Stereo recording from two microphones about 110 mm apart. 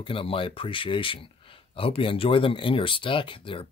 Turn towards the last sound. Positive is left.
turn(degrees=50)  # may be behind; listen again after turning